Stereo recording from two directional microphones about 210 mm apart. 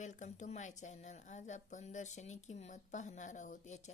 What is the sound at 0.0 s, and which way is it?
A woman's voice, 35° left (ahead or behind).